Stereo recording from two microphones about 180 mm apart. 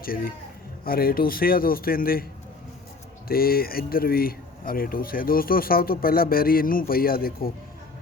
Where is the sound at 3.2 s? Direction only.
55° left (ahead or behind).